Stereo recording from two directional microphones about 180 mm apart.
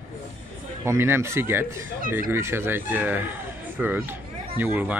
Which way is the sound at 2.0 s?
50° right (ahead or behind).